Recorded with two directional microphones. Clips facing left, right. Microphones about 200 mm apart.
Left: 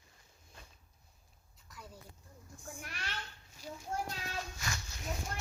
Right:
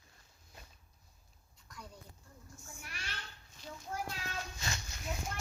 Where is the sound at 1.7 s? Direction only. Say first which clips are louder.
Even; 5° left (ahead or behind).